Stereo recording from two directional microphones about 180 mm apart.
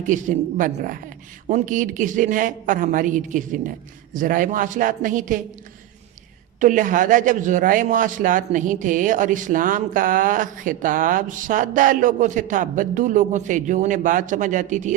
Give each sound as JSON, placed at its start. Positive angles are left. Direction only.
{"t": 0.0, "sound": "a man's voice", "side_deg": -45}
{"t": 6.6, "sound": "a man's voice", "side_deg": -45}